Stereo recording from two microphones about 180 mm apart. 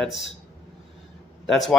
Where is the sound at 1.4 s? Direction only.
Centre (ahead or behind).